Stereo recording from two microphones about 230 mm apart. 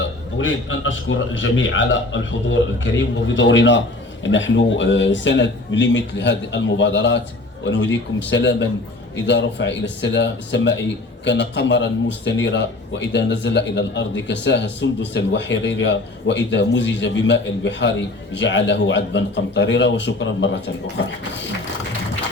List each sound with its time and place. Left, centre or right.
0.0 s a man's voice: left